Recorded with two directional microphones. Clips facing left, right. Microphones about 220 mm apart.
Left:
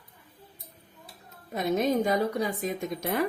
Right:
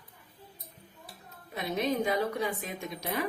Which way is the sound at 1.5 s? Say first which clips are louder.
Left 5 dB; 45° left (ahead or behind).